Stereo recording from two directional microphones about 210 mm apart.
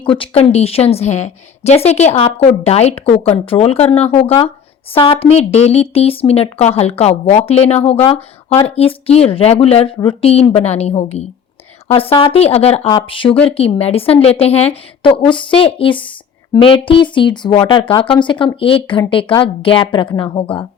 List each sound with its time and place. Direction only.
0.0 s a woman's voice: 25° left (ahead or behind)